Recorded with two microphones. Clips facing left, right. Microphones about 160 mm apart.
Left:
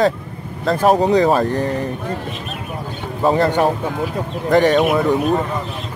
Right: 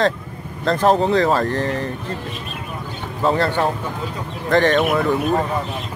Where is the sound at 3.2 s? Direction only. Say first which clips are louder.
Left 3 dB; 15° left (ahead or behind).